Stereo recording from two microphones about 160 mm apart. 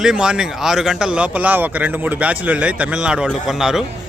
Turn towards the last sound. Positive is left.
turn(degrees=-5)  # may be behind; listen again after turning